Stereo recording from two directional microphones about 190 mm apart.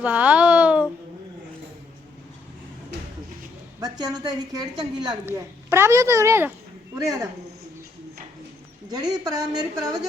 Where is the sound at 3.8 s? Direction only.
20° right (ahead or behind).